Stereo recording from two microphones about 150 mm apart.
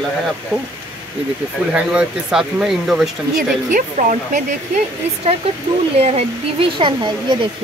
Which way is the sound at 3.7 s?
55° right (ahead or behind).